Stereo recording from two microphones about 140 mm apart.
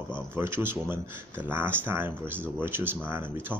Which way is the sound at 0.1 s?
15° right (ahead or behind).